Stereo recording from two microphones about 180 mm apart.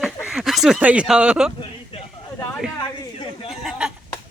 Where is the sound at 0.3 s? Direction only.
Centre (ahead or behind).